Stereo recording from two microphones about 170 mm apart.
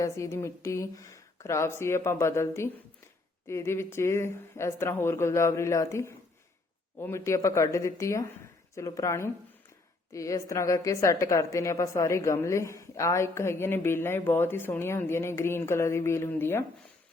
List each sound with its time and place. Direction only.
0.0 s a woman's voice: 15° left (ahead or behind)